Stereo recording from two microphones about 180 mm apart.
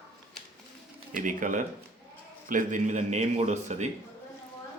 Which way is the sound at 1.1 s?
45° right (ahead or behind).